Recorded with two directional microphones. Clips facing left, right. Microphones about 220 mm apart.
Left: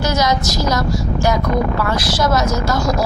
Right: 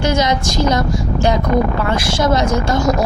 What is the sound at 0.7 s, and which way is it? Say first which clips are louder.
A woman's voice: right 2 dB; 30° right (ahead or behind).